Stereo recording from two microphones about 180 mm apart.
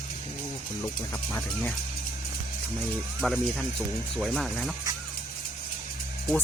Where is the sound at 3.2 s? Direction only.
Centre (ahead or behind).